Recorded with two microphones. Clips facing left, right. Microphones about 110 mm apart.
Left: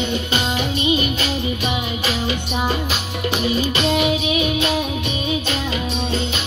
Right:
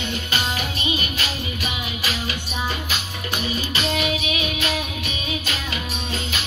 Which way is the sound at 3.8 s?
30° left (ahead or behind).